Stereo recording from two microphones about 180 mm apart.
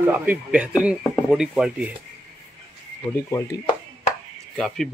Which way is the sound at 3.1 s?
15° left (ahead or behind).